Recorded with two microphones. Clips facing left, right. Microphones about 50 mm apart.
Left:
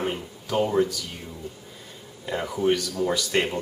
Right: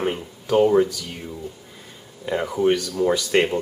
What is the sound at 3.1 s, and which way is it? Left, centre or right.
Speech, centre.